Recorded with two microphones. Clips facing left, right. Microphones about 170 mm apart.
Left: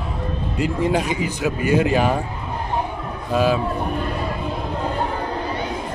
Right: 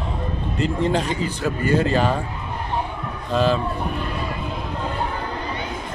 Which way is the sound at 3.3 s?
10° left (ahead or behind).